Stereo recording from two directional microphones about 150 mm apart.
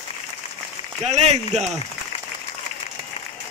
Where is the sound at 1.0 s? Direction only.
45° right (ahead or behind).